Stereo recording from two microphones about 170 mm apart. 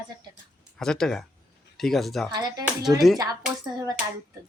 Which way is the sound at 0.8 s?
5° left (ahead or behind).